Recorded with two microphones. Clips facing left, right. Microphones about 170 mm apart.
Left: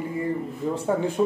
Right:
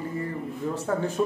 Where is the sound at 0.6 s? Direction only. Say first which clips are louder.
Left 3 dB; 15° left (ahead or behind).